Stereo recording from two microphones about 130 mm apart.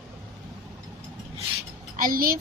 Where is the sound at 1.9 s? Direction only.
90° right.